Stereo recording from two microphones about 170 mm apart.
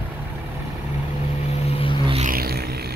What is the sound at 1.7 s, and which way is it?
Vehicle, 35° left (ahead or behind).